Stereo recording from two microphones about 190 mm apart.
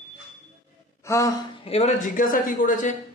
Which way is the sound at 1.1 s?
20° left (ahead or behind).